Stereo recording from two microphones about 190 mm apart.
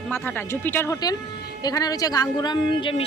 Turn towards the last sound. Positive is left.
turn(degrees=25)  # may be behind; listen again after turning